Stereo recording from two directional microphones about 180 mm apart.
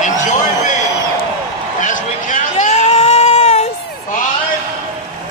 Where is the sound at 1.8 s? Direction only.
45° left (ahead or behind).